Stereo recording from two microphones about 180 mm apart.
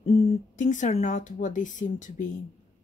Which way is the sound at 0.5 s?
45° left (ahead or behind).